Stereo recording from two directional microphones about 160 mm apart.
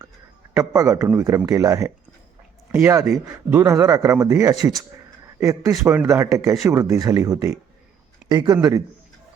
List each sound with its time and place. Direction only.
0.5 s a man's voice: 20° right (ahead or behind)